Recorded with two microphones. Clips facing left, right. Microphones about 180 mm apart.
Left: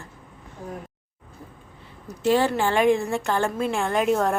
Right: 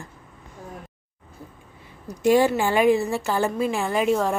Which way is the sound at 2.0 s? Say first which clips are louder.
Right 3 dB; 15° right (ahead or behind).